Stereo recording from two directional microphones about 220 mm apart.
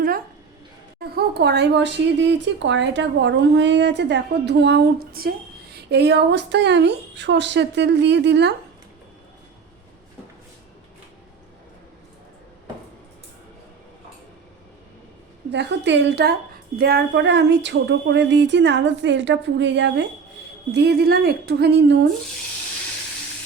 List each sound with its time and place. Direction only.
0.9 s speech: 50° right (ahead or behind)
15.5 s speech: 55° right (ahead or behind)